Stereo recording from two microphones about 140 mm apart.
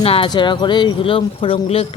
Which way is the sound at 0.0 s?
45° left (ahead or behind).